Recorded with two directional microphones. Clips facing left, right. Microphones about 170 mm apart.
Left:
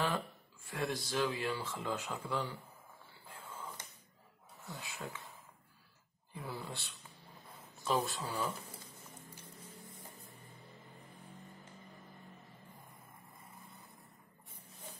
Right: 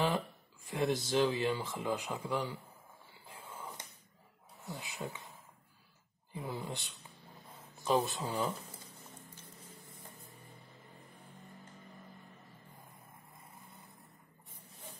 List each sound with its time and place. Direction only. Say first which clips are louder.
0.7 s speech: right 5 dB; 20° right (ahead or behind)
3.3 s a sound: right 1 dB; 15° right (ahead or behind)
4.6 s speech: right 3 dB; 20° right (ahead or behind)
6.3 s speech: right 3 dB; 20° right (ahead or behind)